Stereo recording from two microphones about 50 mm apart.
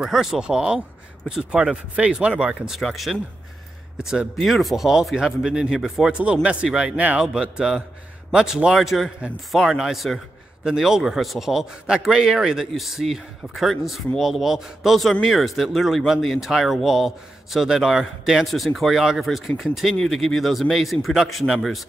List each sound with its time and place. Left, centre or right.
0.0 s speech: centre
2.7 s speech: centre
4.0 s speech: centre
4.4 s speech: centre
6.1 s speech: right
7.2 s speech: centre
18.5 s speech: centre
20.0 s speech: centre